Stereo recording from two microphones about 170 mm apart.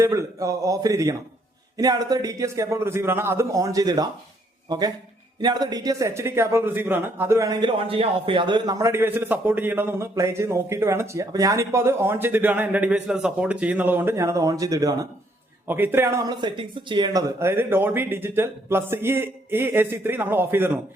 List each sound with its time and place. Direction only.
0.0 s a man's voice: 15° right (ahead or behind)
5.4 s speech: 25° right (ahead or behind)